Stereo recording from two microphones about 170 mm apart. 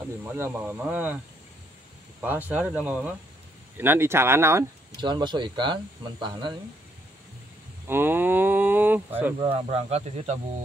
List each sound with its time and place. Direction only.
0.0 s speech: 15° right (ahead or behind)
2.2 s speech: 10° right (ahead or behind)
5.0 s speech: 25° right (ahead or behind)
7.8 s a sound: 15° right (ahead or behind)
9.4 s speech: 30° right (ahead or behind)